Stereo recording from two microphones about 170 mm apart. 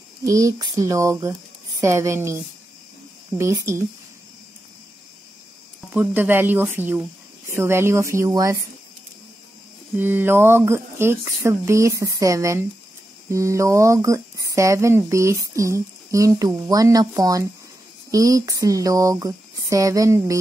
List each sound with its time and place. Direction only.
0.2 s speech: 20° right (ahead or behind)
5.9 s speech: 10° right (ahead or behind)
9.9 s speech: 10° right (ahead or behind)